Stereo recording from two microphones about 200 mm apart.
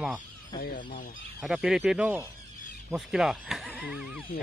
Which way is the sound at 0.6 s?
45° left (ahead or behind).